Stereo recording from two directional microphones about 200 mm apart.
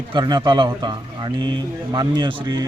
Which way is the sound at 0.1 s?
20° right (ahead or behind).